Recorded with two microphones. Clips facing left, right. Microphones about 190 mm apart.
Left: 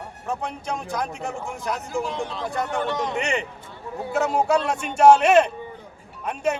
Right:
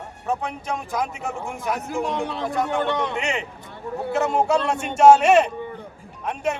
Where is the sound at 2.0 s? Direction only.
65° right (ahead or behind).